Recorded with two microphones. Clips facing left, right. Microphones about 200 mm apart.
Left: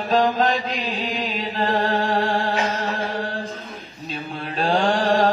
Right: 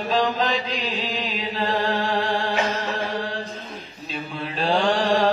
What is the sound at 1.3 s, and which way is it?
Music, 50° left (ahead or behind).